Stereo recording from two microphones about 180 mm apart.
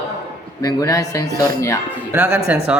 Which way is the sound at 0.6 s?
20° left (ahead or behind).